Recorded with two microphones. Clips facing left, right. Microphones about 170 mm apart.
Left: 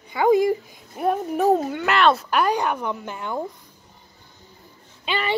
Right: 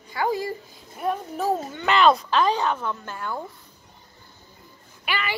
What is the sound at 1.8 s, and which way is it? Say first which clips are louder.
Speech: right 5 dB; 5° left (ahead or behind).